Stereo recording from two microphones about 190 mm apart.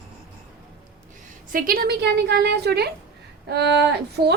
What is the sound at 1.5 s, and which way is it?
A woman's voice, 50° right (ahead or behind).